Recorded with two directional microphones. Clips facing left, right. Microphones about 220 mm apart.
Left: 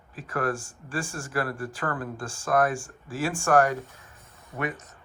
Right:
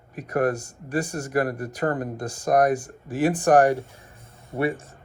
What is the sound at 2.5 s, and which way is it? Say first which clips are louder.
Speech: right 4 dB; 20° right (ahead or behind).